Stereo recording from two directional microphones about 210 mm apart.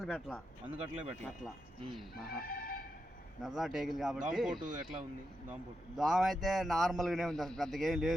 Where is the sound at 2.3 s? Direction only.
45° left (ahead or behind).